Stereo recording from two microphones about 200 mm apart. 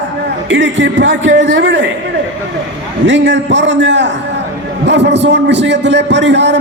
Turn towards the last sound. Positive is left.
turn(degrees=-60)  # may be behind; listen again after turning